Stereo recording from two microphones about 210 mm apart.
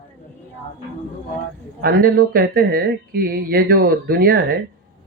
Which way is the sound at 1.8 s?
45° right (ahead or behind).